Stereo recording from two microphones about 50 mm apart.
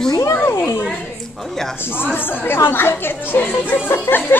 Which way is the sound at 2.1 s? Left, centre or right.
Left.